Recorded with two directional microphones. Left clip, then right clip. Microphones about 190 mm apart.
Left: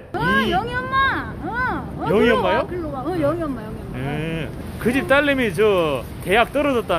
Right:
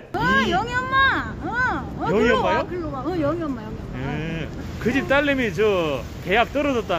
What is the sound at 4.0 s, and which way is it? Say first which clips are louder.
Speech: left 3 dB; 25° left (ahead or behind).